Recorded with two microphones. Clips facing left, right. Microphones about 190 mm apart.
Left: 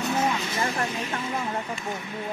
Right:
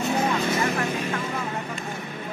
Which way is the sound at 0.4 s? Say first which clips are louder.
Right 4 dB; 55° right (ahead or behind).